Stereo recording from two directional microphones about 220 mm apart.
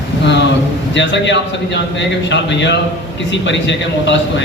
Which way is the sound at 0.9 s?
55° left (ahead or behind).